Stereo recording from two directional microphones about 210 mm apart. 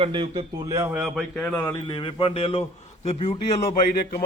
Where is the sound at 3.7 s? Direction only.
45° left (ahead or behind).